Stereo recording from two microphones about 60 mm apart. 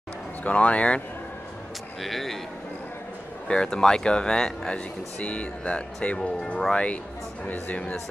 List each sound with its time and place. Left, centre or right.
0.4 s speech: left
2.0 s speech: centre
3.4 s speech: centre
7.4 s speech: left